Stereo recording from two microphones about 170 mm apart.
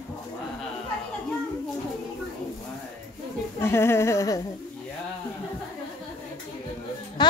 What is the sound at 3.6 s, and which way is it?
Speech, 15° left (ahead or behind).